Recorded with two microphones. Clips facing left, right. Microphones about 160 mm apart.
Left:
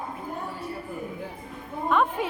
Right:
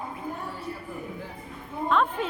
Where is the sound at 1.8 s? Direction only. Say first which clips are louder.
Left 1 dB; 10° left (ahead or behind).